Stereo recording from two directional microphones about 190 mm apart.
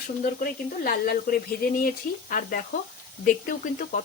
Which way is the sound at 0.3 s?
50° left (ahead or behind).